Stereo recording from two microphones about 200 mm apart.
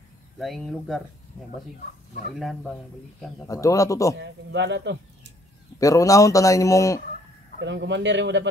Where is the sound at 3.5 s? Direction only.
15° left (ahead or behind).